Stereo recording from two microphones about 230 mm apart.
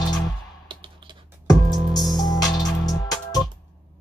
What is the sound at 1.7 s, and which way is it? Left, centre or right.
Music, centre.